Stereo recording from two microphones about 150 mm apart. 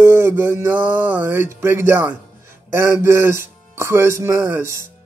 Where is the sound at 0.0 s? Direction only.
15° right (ahead or behind).